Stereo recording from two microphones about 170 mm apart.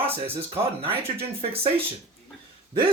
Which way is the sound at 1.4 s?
35° right (ahead or behind).